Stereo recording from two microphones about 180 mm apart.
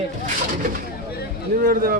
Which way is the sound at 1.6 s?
55° right (ahead or behind).